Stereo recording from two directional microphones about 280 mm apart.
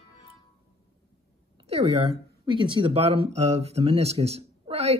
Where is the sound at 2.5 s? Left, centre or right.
Centre.